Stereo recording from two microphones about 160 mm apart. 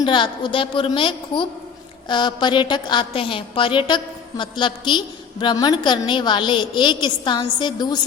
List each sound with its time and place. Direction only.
0.0 s a woman's voice: 30° left (ahead or behind)